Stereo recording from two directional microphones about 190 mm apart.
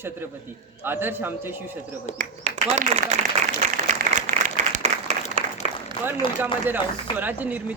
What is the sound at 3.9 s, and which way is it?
Applause, 40° right (ahead or behind).